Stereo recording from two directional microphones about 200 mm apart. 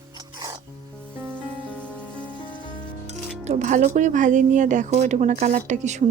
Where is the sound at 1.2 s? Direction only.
10° right (ahead or behind).